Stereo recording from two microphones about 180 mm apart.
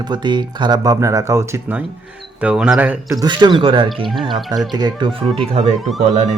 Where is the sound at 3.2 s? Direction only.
25° right (ahead or behind).